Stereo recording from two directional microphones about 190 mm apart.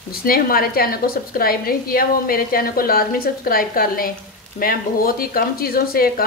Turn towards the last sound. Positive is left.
turn(degrees=50)  # may be behind; listen again after turning